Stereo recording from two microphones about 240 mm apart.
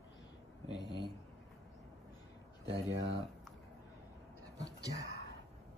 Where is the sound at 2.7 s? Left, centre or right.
Right.